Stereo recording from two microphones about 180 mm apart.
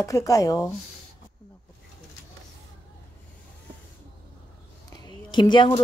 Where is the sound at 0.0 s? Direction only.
20° left (ahead or behind).